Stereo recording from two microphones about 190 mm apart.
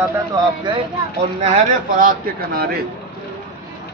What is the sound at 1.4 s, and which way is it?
A man's voice, 40° right (ahead or behind).